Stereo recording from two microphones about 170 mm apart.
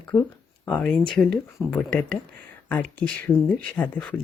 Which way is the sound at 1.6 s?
15° right (ahead or behind).